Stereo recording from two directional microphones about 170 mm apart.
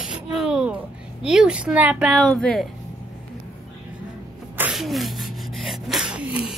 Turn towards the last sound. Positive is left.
turn(degrees=-5)  # may be behind; listen again after turning